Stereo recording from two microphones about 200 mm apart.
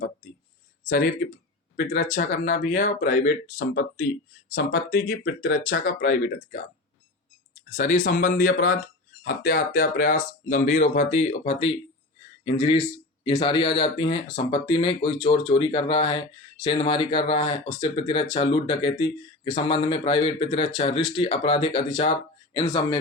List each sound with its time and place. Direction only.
0.9 s speech: 45° left (ahead or behind)
7.8 s speech: 35° left (ahead or behind); by 23.0 s 15° left (ahead or behind)